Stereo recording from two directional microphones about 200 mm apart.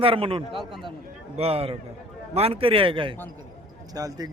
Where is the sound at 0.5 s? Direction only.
Centre (ahead or behind).